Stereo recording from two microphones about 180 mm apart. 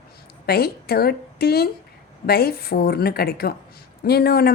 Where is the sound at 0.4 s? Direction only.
60° left (ahead or behind).